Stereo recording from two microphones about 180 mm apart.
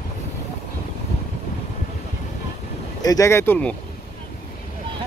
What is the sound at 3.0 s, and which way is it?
Speech, 20° left (ahead or behind).